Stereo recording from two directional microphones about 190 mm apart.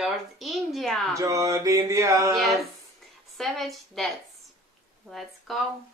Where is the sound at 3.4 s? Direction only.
Centre (ahead or behind).